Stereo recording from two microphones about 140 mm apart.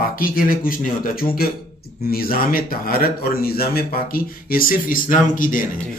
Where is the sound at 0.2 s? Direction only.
90° left; by 5.6 s 70° left (ahead or behind).